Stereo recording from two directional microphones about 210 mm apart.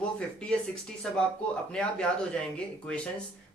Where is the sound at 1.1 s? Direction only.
5° left (ahead or behind).